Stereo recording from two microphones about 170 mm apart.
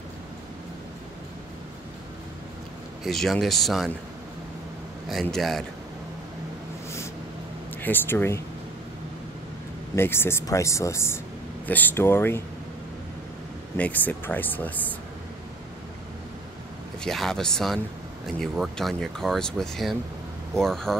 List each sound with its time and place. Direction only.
3.0 s speech: centre (ahead or behind)
5.1 s speech: centre (ahead or behind)
7.8 s speech: 10° left (ahead or behind)
9.9 s speech: 15° left (ahead or behind)
13.7 s speech: 10° left (ahead or behind)
17.0 s speech: centre (ahead or behind)